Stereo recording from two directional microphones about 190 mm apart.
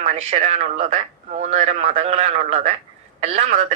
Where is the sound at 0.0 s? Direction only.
35° right (ahead or behind).